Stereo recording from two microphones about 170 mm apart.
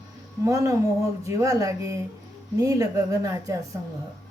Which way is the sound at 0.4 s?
20° right (ahead or behind).